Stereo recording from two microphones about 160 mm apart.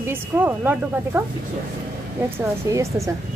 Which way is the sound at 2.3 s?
20° right (ahead or behind).